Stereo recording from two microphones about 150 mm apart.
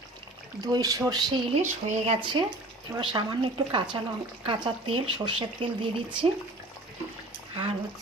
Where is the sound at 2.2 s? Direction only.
30° right (ahead or behind).